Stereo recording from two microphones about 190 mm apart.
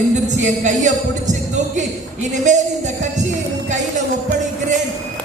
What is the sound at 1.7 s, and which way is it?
Speech, 40° right (ahead or behind).